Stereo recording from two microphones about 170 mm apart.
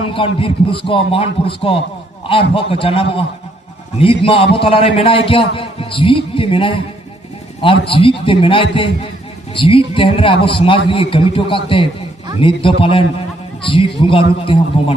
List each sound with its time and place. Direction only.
0.1 s a man's voice: 30° left (ahead or behind)